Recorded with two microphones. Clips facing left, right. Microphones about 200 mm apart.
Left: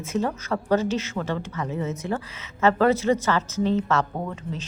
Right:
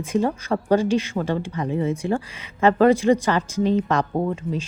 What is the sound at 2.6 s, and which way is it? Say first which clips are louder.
A woman's voice: right 4 dB; 15° right (ahead or behind).